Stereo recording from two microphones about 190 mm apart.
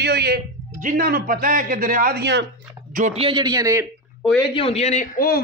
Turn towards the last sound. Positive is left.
turn(degrees=45)  # may be behind; listen again after turning